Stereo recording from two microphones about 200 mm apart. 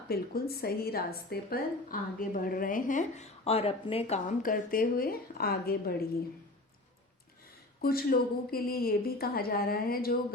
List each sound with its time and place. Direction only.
0.1 s a woman's voice: 50° left (ahead or behind)
7.8 s a woman's voice: 50° left (ahead or behind)